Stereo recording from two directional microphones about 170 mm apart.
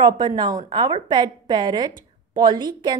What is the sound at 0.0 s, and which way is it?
A woman's voice, 25° right (ahead or behind).